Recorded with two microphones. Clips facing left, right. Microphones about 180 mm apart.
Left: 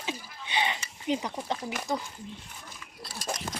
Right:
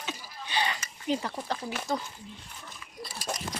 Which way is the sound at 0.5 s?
20° left (ahead or behind).